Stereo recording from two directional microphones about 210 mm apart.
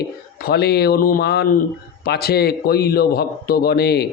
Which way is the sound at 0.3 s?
50° left (ahead or behind).